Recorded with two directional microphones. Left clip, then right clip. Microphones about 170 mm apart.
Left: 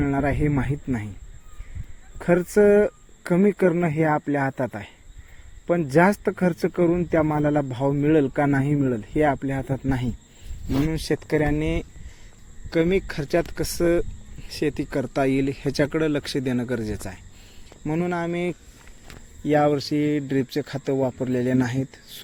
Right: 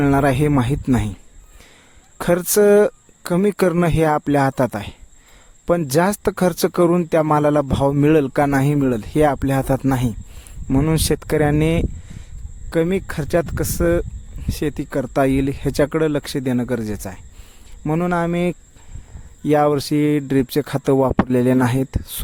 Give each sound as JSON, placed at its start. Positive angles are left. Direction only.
{"t": 0.0, "sound": "speech", "side_deg": -60}
{"t": 2.1, "sound": "speech", "side_deg": -55}
{"t": 10.8, "sound": "speech", "side_deg": -65}
{"t": 12.7, "sound": "speech", "side_deg": -50}